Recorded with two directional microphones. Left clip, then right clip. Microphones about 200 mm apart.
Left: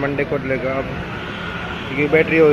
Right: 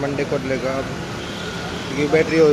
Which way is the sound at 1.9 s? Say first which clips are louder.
Left 2 dB; 5° right (ahead or behind).